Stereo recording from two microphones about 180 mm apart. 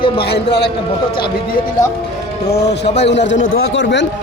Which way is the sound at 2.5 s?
65° left (ahead or behind).